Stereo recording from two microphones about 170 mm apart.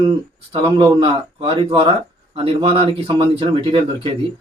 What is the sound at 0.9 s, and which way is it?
Speech, 30° right (ahead or behind).